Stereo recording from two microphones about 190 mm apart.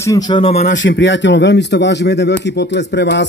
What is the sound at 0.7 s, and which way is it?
A man's voice, 70° left (ahead or behind).